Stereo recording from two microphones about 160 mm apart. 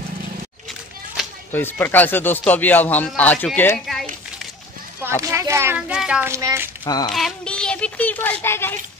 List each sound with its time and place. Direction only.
1.2 s a sound: centre (ahead or behind)
1.5 s speech: 15° left (ahead or behind)
5.0 s a child's voice: 15° right (ahead or behind)
6.3 s a child's voice: 15° right (ahead or behind)
6.8 s speech: 25° left (ahead or behind)
7.1 s speech: centre (ahead or behind)